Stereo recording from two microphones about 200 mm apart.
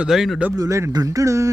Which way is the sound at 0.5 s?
15° right (ahead or behind).